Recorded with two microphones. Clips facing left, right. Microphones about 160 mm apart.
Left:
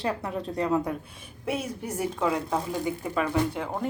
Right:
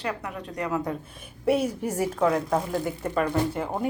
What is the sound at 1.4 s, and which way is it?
Speech, 65° right (ahead or behind).